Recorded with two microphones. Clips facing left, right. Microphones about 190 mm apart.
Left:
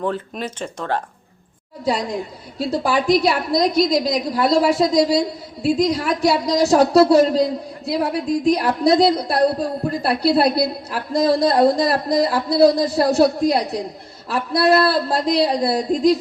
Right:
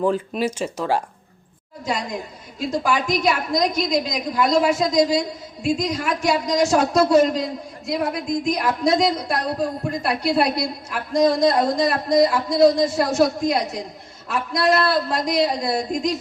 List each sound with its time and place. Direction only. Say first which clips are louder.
0.0 s speech: right 4 dB; 5° right (ahead or behind)
1.8 s a woman's voice: left 5 dB; 35° left (ahead or behind)